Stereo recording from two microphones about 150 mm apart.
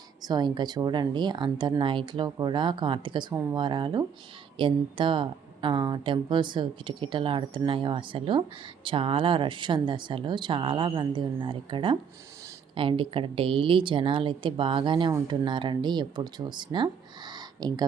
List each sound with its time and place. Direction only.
0.2 s a woman's voice: 25° right (ahead or behind)